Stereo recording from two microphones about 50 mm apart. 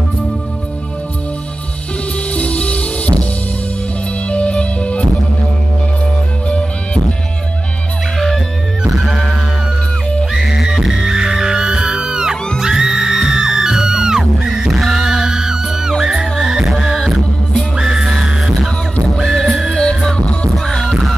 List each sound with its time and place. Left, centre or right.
2.3 s music: left
4.3 s music: left
8.8 s music: centre
10.3 s music: centre
19.2 s music: centre
20.1 s music: centre